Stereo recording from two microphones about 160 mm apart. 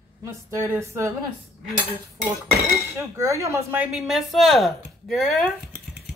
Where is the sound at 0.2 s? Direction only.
20° right (ahead or behind).